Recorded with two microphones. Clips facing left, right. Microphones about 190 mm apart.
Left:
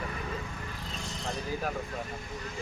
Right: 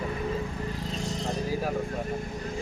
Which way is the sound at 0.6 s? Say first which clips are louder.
Right 8 dB; 35° right (ahead or behind).